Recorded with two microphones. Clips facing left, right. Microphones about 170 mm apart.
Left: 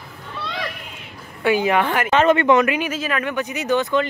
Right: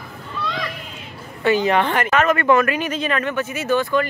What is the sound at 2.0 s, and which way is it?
Speech, 25° left (ahead or behind).